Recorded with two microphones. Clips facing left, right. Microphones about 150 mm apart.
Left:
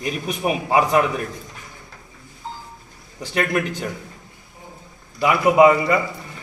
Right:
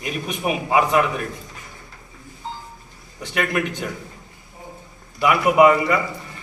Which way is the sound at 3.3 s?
30° left (ahead or behind).